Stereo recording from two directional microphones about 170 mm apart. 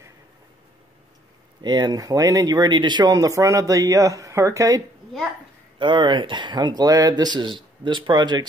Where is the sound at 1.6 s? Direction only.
25° right (ahead or behind).